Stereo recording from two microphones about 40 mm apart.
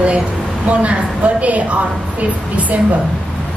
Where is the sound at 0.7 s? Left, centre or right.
Right.